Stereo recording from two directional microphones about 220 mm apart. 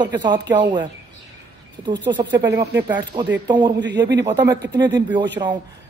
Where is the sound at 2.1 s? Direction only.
20° right (ahead or behind).